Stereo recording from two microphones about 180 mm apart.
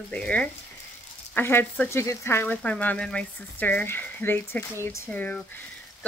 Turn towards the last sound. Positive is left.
turn(degrees=5)  # may be behind; listen again after turning